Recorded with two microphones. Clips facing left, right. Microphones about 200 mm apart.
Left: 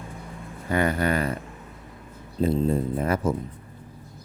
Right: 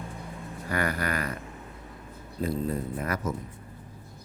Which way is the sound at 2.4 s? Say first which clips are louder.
Left 7 dB; 25° left (ahead or behind).